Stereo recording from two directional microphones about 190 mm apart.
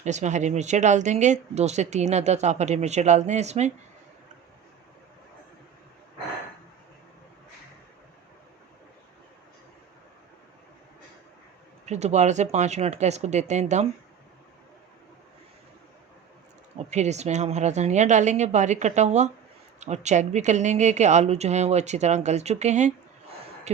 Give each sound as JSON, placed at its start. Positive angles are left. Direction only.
{"t": 0.0, "sound": "speech", "side_deg": -40}
{"t": 11.9, "sound": "speech", "side_deg": -35}
{"t": 16.7, "sound": "speech", "side_deg": -35}